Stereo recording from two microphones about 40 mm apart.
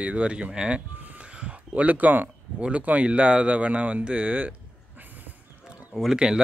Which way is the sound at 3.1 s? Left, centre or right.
Right.